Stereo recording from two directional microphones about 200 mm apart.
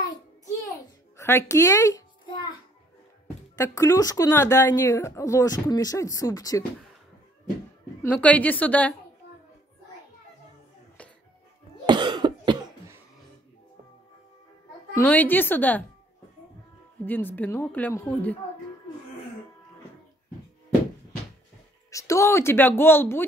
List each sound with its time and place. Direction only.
0.7 s babbling: 15° left (ahead or behind)
3.5 s speech: 15° left (ahead or behind)
8.0 s speech: 5° left (ahead or behind)
11.8 s cough: 20° right (ahead or behind)
15.0 s speech: 10° left (ahead or behind)
17.0 s speech: 10° left (ahead or behind)
21.9 s speech: 15° left (ahead or behind)